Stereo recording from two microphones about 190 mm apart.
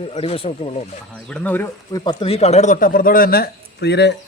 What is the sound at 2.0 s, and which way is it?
A man's voice, 25° left (ahead or behind).